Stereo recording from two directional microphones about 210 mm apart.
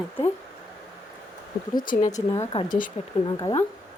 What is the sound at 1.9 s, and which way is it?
Speech, 30° left (ahead or behind).